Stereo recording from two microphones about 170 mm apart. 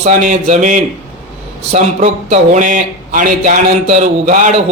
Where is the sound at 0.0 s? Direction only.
50° right (ahead or behind).